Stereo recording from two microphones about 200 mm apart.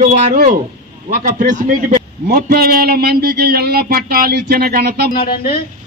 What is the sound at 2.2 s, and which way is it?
Speech, 50° right (ahead or behind).